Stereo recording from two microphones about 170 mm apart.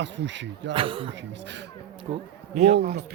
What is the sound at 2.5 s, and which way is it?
Speech, 40° right (ahead or behind).